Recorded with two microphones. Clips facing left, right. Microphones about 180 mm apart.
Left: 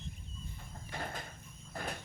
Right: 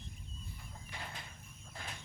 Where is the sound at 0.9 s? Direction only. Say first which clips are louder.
Left 7 dB; 50° left (ahead or behind).